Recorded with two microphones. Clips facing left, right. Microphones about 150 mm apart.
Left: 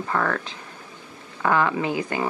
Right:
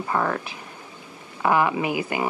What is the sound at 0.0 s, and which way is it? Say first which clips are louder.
Speech: even; 20° right (ahead or behind).